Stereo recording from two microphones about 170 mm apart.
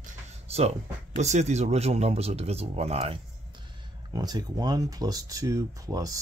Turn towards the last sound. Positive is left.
turn(degrees=-20)  # may be behind; listen again after turning